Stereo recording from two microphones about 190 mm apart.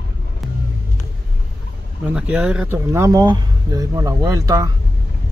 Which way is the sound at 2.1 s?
5° right (ahead or behind).